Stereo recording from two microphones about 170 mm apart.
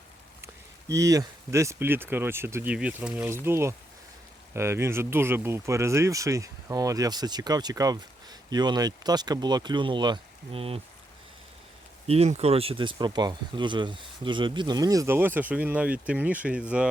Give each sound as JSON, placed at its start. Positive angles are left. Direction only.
{"t": 0.4, "sound": "speech", "side_deg": -20}
{"t": 12.0, "sound": "speech", "side_deg": -35}